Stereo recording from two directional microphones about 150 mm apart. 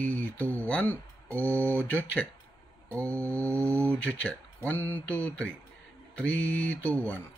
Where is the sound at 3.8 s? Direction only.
10° left (ahead or behind).